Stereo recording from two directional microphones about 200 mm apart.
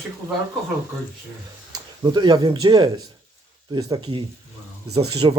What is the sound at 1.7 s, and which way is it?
Speech, 20° right (ahead or behind).